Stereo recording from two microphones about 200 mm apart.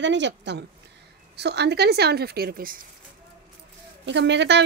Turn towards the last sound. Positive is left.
turn(degrees=-60)  # may be behind; listen again after turning